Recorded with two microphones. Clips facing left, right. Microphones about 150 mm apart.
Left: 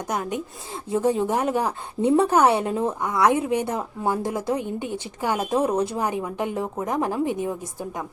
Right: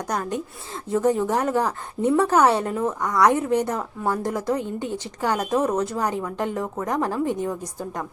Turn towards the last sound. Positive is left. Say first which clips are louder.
# even
turn(degrees=15)  # may be behind; listen again after turning